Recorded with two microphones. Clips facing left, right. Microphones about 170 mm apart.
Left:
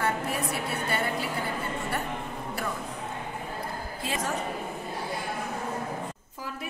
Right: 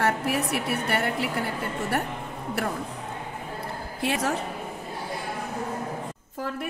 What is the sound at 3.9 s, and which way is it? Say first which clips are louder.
Speech: right 6 dB; 75° right (ahead or behind).